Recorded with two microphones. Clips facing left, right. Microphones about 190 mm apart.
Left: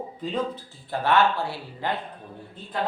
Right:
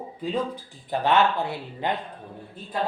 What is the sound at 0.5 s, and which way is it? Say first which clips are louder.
Speech: right 2 dB; 20° right (ahead or behind).